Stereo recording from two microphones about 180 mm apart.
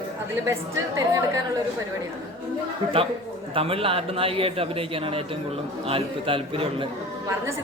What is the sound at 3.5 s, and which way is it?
A man's voice, 30° right (ahead or behind).